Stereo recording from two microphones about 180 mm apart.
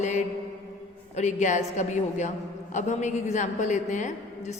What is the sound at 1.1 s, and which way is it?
A woman's voice, 40° left (ahead or behind).